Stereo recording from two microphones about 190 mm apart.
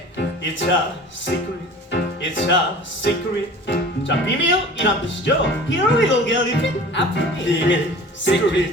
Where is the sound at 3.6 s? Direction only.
70° left (ahead or behind).